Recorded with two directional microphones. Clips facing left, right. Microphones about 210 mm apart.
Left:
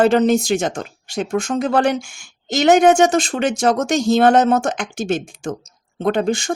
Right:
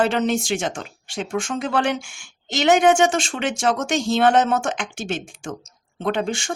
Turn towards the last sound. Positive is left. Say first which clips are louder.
# left 5 dB
turn(degrees=40)  # may be behind; listen again after turning